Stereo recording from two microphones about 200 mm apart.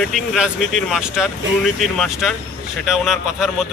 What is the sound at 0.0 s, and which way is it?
Speech, centre (ahead or behind).